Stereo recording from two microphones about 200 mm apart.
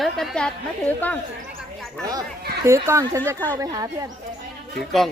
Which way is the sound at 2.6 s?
15° right (ahead or behind).